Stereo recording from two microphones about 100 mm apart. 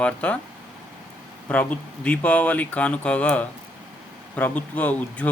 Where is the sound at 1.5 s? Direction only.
15° left (ahead or behind).